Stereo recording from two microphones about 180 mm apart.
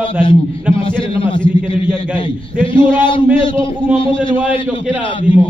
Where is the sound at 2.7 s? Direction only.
25° left (ahead or behind).